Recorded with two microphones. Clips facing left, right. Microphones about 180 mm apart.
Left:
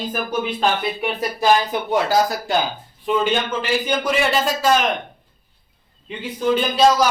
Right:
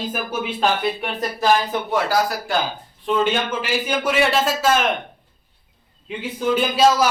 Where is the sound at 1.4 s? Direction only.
15° left (ahead or behind).